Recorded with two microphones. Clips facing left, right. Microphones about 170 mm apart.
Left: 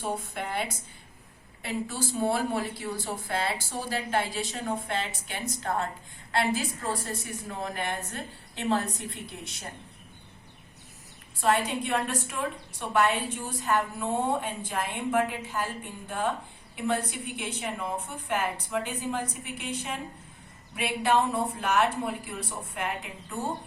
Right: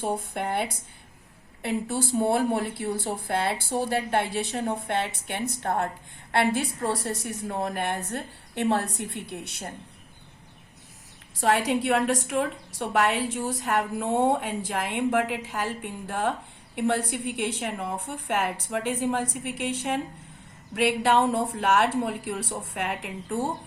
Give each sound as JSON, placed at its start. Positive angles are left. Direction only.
{"t": 0.2, "sound": "a woman's voice", "side_deg": -55}
{"t": 7.0, "sound": "a woman's voice", "side_deg": -70}
{"t": 7.4, "sound": "a woman's voice", "side_deg": -50}
{"t": 8.1, "sound": "a woman's voice", "side_deg": -65}
{"t": 11.3, "sound": "a woman's voice", "side_deg": -90}
{"t": 20.7, "sound": "a woman's voice", "side_deg": -70}